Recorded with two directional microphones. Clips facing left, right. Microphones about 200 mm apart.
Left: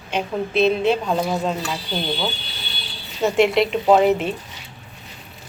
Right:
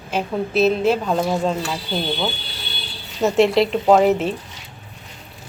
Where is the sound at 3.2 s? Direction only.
Centre (ahead or behind).